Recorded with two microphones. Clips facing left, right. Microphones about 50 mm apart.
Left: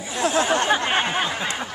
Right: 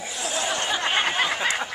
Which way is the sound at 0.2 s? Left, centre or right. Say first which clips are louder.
Left 8 dB; left.